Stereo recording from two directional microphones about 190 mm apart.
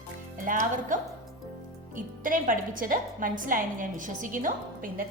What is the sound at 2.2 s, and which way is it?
A woman's voice, 45° right (ahead or behind).